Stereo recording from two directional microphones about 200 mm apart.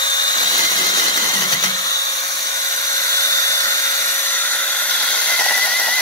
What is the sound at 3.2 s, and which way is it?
Dental drill, 15° left (ahead or behind).